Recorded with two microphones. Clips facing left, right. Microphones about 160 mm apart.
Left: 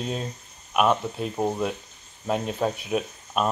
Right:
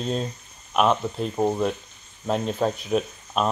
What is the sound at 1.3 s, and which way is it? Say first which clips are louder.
Speech: right 3 dB; 10° right (ahead or behind).